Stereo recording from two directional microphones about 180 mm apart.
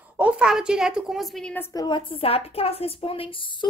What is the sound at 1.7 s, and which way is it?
A woman's voice, 25° left (ahead or behind).